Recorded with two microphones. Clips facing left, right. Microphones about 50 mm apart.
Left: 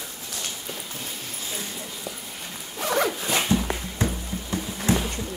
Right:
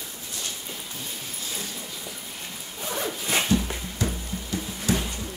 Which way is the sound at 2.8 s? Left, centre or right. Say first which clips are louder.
Left 7 dB; left.